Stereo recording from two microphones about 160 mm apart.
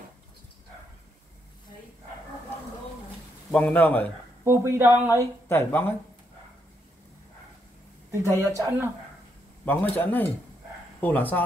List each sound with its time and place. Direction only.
3.5 s a man's voice: 10° left (ahead or behind)
4.5 s speech: 15° right (ahead or behind)
5.5 s a man's voice: 15° left (ahead or behind)
8.2 s a man's voice: 15° left (ahead or behind)
8.5 s speech: 15° right (ahead or behind)
9.7 s a man's voice: 10° left (ahead or behind)